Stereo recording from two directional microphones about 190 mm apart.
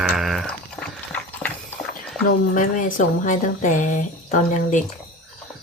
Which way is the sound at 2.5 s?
45° left (ahead or behind).